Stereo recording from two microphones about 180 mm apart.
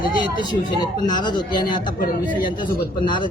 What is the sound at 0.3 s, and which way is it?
A man's voice, 25° left (ahead or behind).